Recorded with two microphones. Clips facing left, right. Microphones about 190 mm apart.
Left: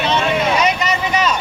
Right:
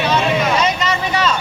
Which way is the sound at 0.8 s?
15° left (ahead or behind).